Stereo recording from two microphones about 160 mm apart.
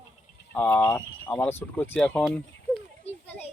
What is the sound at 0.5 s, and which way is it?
Speech, 10° left (ahead or behind).